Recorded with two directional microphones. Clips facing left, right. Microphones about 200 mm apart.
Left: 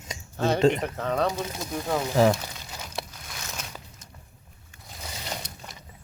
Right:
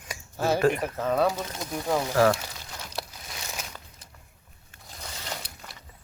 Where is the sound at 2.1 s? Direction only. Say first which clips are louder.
Left 1 dB; 15° left (ahead or behind).